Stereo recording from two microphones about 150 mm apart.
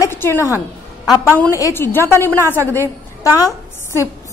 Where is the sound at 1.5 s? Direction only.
20° left (ahead or behind).